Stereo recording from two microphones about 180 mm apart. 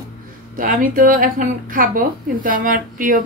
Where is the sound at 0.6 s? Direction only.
50° right (ahead or behind).